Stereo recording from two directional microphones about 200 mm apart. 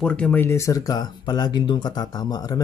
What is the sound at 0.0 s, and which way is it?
Speech, 5° left (ahead or behind).